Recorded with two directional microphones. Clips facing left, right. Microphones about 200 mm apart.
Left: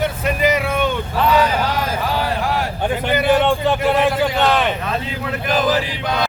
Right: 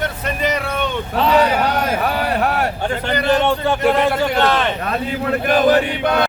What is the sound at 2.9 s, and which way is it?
A man's voice, 5° left (ahead or behind).